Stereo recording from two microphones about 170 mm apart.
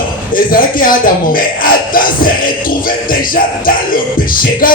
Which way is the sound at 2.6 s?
55° left (ahead or behind).